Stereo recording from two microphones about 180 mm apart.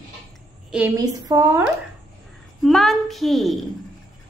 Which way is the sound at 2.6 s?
Centre (ahead or behind).